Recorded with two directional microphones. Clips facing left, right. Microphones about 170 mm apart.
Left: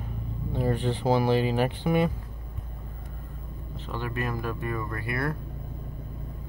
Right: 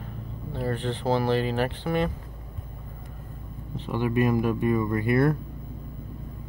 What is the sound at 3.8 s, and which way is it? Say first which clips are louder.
Speech: right 8 dB; 15° right (ahead or behind).